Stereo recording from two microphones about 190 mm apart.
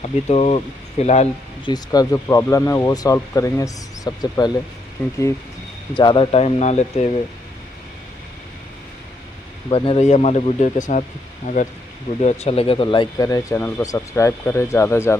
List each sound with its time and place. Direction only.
0.0 s speech: 35° left (ahead or behind)
1.7 s speech: 20° left (ahead or behind)
5.9 s speech: 25° left (ahead or behind)
9.7 s speech: 30° left (ahead or behind); by 15.1 s 15° left (ahead or behind)